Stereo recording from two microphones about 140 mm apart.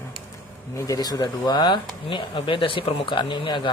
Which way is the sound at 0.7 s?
25° left (ahead or behind).